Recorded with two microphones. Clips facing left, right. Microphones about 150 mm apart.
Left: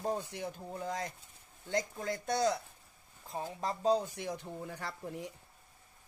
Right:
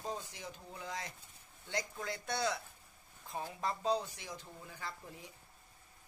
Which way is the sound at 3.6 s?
40° left (ahead or behind).